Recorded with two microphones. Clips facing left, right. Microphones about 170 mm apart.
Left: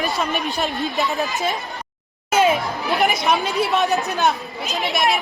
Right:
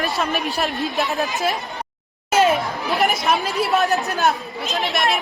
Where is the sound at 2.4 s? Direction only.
5° left (ahead or behind).